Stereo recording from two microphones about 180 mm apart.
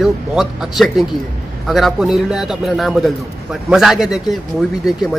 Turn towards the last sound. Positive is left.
turn(degrees=0)  # may be behind; listen again after turning